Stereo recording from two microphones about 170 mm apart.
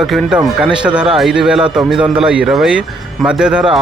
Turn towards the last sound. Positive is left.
turn(degrees=-5)  # may be behind; listen again after turning